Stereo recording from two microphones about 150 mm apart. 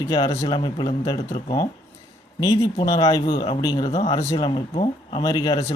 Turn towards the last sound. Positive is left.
turn(degrees=25)  # may be behind; listen again after turning